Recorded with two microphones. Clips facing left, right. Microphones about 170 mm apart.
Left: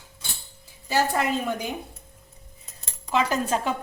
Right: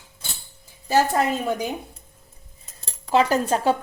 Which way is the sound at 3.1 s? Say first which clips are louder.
Right 4 dB; 35° right (ahead or behind).